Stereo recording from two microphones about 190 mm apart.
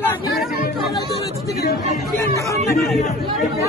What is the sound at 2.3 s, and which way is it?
Speech, 15° left (ahead or behind).